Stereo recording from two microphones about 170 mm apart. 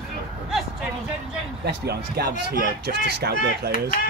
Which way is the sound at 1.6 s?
70° right (ahead or behind).